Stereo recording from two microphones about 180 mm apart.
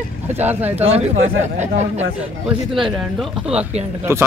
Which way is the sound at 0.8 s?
35° right (ahead or behind).